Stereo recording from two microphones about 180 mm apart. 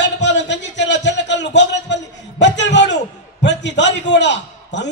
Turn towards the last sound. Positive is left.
turn(degrees=75)  # may be behind; listen again after turning